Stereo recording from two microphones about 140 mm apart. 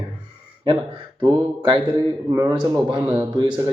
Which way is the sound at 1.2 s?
35° right (ahead or behind).